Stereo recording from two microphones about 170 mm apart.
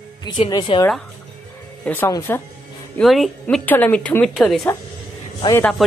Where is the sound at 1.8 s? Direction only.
10° left (ahead or behind).